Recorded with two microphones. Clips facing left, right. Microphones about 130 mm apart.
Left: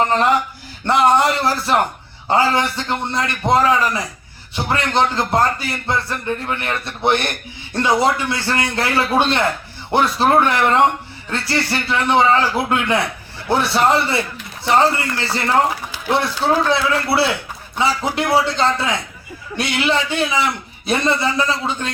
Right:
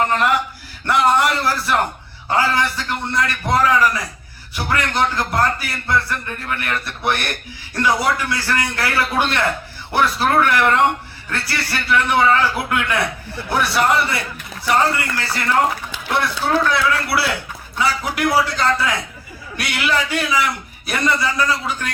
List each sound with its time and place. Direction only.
0.9 s a man's voice: 25° left (ahead or behind)
16.6 s a man's voice: 25° left (ahead or behind)